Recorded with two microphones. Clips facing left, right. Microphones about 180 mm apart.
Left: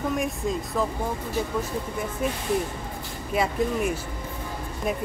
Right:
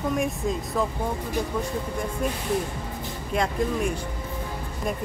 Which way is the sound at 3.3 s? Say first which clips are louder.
Left 1 dB; 5° left (ahead or behind).